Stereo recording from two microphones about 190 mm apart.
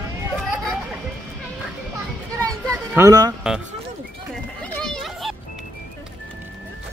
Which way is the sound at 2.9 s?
20° right (ahead or behind).